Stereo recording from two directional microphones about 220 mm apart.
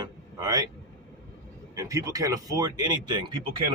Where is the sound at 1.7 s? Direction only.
15° right (ahead or behind).